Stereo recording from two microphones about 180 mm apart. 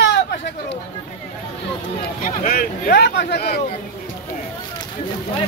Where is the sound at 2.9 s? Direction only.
65° left (ahead or behind).